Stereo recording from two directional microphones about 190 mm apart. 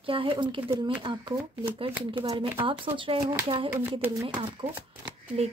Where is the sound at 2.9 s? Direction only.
25° right (ahead or behind).